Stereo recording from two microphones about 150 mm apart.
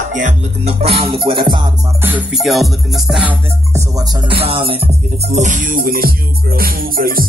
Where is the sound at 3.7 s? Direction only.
25° right (ahead or behind).